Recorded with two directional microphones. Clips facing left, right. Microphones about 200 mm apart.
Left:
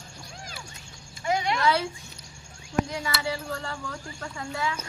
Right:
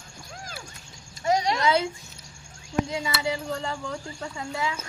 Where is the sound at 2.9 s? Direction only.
20° right (ahead or behind).